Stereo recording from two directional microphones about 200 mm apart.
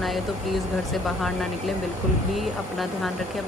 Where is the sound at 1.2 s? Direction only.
Centre (ahead or behind).